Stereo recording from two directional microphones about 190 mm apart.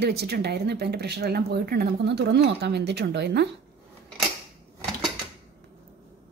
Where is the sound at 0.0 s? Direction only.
60° right (ahead or behind).